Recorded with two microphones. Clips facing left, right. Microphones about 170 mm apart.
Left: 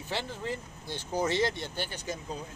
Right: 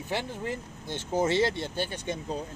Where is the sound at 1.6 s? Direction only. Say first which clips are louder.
Right 4 dB; 25° right (ahead or behind).